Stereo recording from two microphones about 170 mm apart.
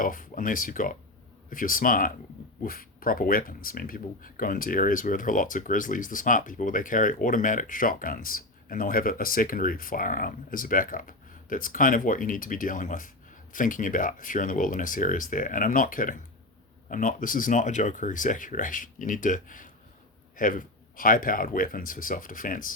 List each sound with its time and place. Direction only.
0.0 s speech: 55° left (ahead or behind)